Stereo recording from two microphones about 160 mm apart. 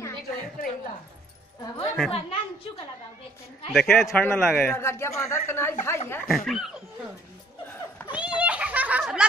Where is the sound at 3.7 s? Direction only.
5° left (ahead or behind).